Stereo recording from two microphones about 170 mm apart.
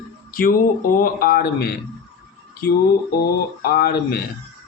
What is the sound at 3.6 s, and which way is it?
Speech, 65° left (ahead or behind).